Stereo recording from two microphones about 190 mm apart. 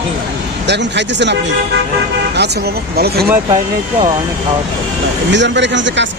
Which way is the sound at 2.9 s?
55° right (ahead or behind).